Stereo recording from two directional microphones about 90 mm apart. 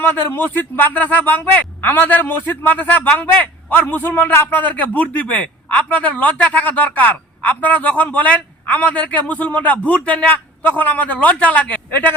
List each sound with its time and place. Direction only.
0.0 s speech: 20° left (ahead or behind)